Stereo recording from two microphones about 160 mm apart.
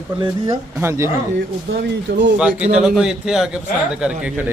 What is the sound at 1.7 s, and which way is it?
Speech, 90° right.